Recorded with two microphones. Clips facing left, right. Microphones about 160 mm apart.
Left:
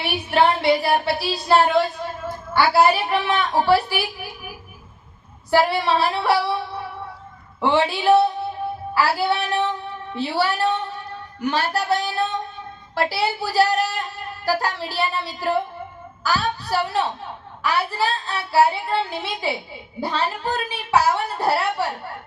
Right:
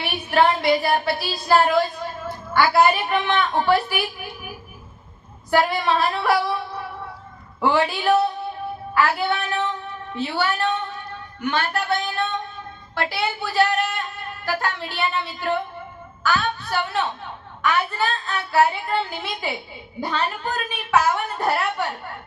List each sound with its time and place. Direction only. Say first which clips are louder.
0.3 s a woman's voice: even; 30° left (ahead or behind)
5.5 s a woman's voice: left 1 dB; 30° left (ahead or behind)
7.6 s a woman's voice: left 1 dB; 30° left (ahead or behind)